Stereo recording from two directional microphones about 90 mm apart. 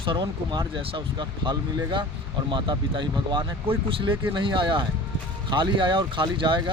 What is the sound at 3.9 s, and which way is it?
Speech, 80° right.